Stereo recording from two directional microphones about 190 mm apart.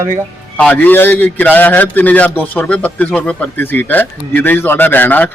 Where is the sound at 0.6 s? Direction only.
5° left (ahead or behind).